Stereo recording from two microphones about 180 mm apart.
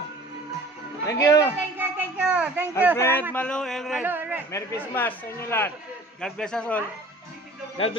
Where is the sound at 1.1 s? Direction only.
20° left (ahead or behind).